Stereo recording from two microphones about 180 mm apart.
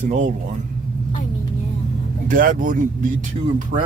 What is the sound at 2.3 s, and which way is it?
Speech, 50° right (ahead or behind).